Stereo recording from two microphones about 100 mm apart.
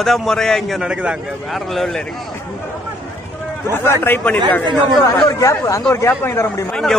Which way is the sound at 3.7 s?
25° left (ahead or behind).